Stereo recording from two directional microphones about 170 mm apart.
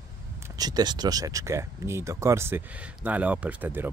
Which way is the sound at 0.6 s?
25° right (ahead or behind).